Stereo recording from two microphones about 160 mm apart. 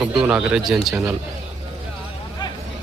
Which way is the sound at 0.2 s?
5° right (ahead or behind).